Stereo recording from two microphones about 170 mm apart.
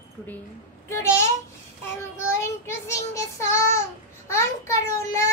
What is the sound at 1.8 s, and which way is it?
Child singing, 15° left (ahead or behind).